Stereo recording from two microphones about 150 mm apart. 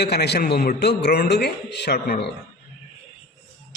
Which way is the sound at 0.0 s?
90° left.